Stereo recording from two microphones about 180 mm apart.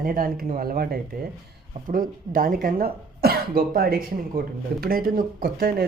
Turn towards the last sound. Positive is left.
turn(degrees=-55)  # may be behind; listen again after turning